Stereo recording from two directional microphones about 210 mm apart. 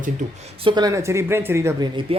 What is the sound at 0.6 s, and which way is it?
A woman's voice, 20° right (ahead or behind).